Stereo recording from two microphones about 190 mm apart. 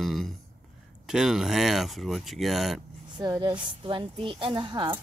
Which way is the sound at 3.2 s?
20° right (ahead or behind).